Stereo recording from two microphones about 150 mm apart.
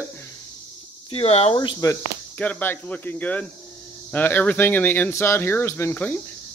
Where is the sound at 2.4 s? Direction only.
10° left (ahead or behind).